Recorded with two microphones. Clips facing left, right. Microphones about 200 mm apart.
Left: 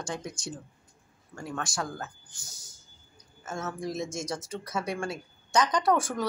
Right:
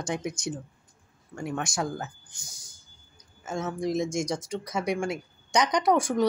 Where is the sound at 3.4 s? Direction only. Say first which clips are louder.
Right 4 dB; 15° right (ahead or behind).